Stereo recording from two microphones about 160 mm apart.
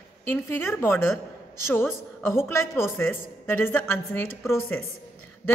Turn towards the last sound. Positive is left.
turn(degrees=15)  # may be behind; listen again after turning